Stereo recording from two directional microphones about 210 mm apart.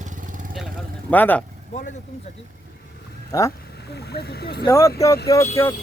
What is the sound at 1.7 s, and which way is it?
Speech, 35° left (ahead or behind).